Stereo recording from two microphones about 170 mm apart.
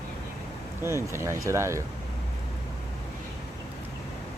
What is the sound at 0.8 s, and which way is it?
Speech, 15° right (ahead or behind).